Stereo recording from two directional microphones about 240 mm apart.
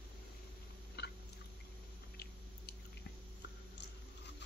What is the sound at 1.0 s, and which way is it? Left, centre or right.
Chewing, left.